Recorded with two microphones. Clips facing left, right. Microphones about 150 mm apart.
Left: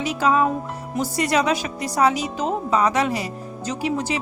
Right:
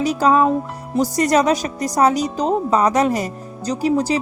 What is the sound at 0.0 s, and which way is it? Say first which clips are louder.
A woman's voice: right 4 dB; 35° right (ahead or behind).